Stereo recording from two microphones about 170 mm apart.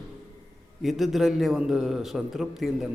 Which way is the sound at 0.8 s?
Centre (ahead or behind).